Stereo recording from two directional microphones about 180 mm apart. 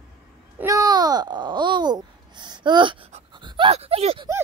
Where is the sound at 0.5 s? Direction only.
20° right (ahead or behind).